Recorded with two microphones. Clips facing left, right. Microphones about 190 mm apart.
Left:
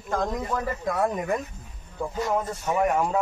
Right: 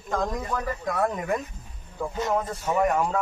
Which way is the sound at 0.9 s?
15° left (ahead or behind).